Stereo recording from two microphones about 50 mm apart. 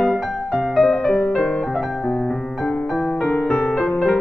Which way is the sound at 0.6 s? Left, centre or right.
Centre.